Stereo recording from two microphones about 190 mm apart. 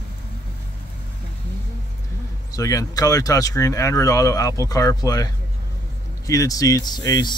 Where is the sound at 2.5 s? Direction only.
15° left (ahead or behind).